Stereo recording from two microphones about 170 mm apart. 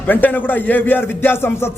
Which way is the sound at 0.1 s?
10° left (ahead or behind).